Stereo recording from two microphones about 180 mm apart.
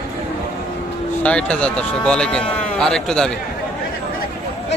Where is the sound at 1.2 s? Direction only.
5° left (ahead or behind).